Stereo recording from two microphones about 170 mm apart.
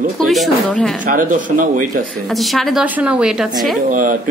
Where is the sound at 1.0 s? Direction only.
50° right (ahead or behind).